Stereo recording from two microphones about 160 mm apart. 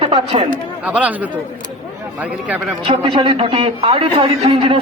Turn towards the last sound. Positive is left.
turn(degrees=-35)  # may be behind; listen again after turning